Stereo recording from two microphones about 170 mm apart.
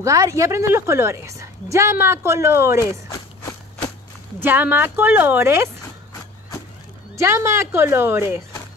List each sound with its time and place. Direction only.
0.0 s a woman's voice: 20° right (ahead or behind)
3.1 s walk: 25° left (ahead or behind)
4.4 s a woman's voice: 10° right (ahead or behind)
7.2 s a woman's voice: 15° right (ahead or behind)